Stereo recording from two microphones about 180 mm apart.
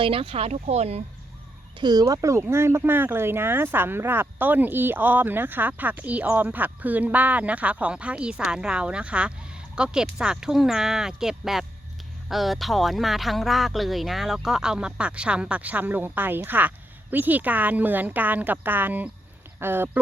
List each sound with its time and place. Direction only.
0.0 s speech: 30° right (ahead or behind)
1.8 s speech: 20° right (ahead or behind)